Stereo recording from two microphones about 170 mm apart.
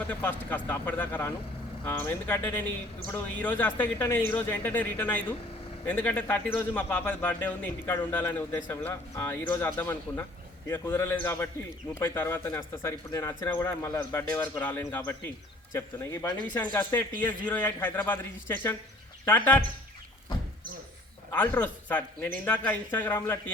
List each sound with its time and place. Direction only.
0.1 s speech: 10° left (ahead or behind)
21.3 s speech: 10° left (ahead or behind)